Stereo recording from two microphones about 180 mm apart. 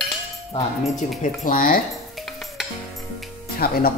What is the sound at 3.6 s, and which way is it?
Speech, 55° left (ahead or behind).